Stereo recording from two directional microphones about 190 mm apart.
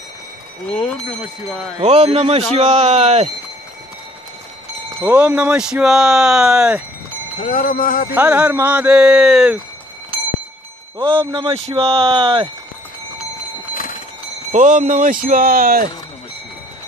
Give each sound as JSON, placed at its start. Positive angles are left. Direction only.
{"t": 1.8, "sound": "a man's voice", "side_deg": -35}
{"t": 4.8, "sound": "speech", "side_deg": -10}
{"t": 7.3, "sound": "speech", "side_deg": 45}
{"t": 8.1, "sound": "speech", "side_deg": -10}
{"t": 11.0, "sound": "speech", "side_deg": -25}
{"t": 14.5, "sound": "speech", "side_deg": -40}